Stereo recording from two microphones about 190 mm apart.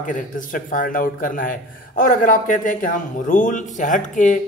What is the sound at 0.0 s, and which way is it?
Speech, 45° left (ahead or behind).